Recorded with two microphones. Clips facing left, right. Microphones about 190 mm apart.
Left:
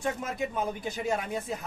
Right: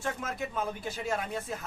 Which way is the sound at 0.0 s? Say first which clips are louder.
Left 3 dB; 15° left (ahead or behind).